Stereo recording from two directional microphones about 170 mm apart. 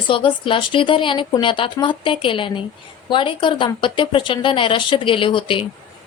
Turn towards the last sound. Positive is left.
turn(degrees=30)  # may be behind; listen again after turning